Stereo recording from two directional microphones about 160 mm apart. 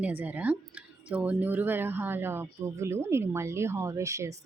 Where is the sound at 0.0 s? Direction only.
10° right (ahead or behind).